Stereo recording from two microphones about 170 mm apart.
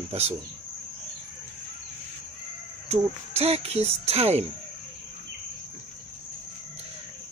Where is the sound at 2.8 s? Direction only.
40° right (ahead or behind).